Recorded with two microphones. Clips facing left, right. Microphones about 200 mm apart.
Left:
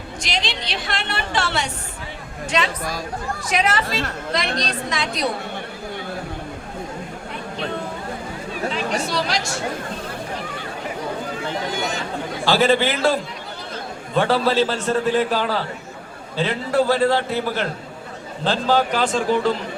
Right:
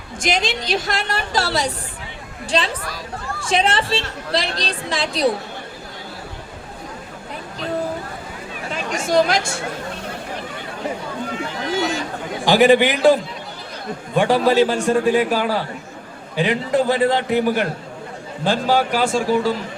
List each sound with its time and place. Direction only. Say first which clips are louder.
0.2 s a woman's voice: right 6 dB; 50° right (ahead or behind); by 5.2 s 30° right (ahead or behind)
9.0 s a woman's voice: right 7 dB; 50° right (ahead or behind)
12.5 s a man's voice: right 4 dB; 15° right (ahead or behind)
14.2 s a man's voice: right 3 dB; 15° right (ahead or behind)